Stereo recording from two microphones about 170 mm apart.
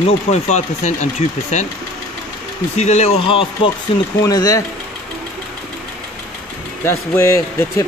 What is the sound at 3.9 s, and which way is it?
Speech, 20° left (ahead or behind).